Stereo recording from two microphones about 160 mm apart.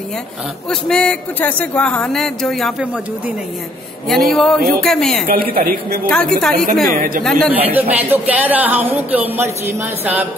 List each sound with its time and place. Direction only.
0.7 s speech: 5° left (ahead or behind)
4.1 s speech: centre (ahead or behind)
5.2 s speech: 65° right (ahead or behind)
6.0 s speech: 5° left (ahead or behind)
7.5 s speech: 10° right (ahead or behind)